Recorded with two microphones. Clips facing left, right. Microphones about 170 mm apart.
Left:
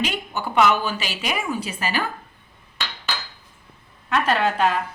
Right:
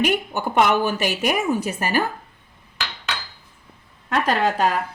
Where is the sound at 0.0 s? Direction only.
55° right (ahead or behind).